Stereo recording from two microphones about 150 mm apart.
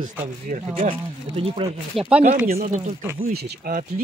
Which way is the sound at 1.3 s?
40° right (ahead or behind).